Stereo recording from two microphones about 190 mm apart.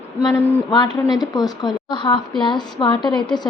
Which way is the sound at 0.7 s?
25° left (ahead or behind).